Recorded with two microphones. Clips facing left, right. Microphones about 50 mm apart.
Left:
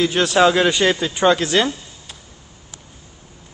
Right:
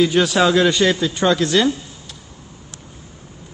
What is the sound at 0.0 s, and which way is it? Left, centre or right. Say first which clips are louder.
A man's voice: even; centre.